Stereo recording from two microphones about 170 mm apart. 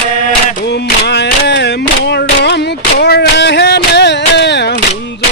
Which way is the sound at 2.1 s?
85° left.